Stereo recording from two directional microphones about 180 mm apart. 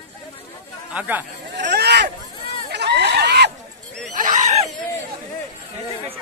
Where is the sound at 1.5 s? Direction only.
70° right (ahead or behind).